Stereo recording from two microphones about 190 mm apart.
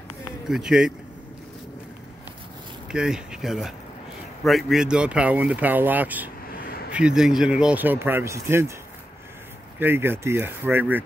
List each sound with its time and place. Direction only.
0.5 s speech: 5° right (ahead or behind)
2.9 s speech: 5° right (ahead or behind)
6.5 s a sound: 50° left (ahead or behind)
6.9 s speech: 5° right (ahead or behind)
9.8 s speech: 10° right (ahead or behind)